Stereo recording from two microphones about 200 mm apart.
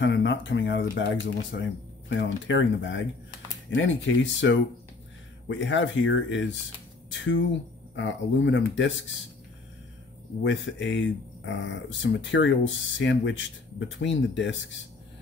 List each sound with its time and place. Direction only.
0.0 s speech: 65° left (ahead or behind)
10.4 s speech: 65° left (ahead or behind)